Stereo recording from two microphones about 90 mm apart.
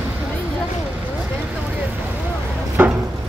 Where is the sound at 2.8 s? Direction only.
20° right (ahead or behind).